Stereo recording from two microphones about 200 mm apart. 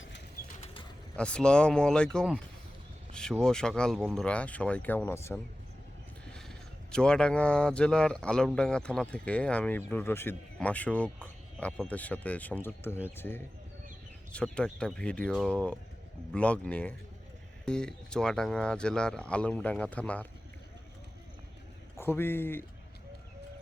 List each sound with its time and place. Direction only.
0.6 s bird: 25° left (ahead or behind)
1.1 s speech: 5° left (ahead or behind)
21.9 s speech: 10° left (ahead or behind)